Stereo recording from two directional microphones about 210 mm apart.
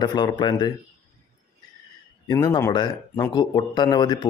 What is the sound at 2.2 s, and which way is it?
Speech, 20° left (ahead or behind).